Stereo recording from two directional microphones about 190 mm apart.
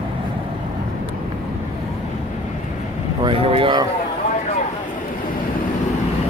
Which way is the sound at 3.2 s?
30° right (ahead or behind).